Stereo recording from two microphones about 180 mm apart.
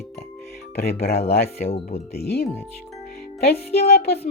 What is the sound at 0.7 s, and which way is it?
Speech, 60° left (ahead or behind).